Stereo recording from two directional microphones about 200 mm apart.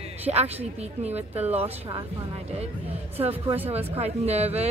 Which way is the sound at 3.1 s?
30° right (ahead or behind).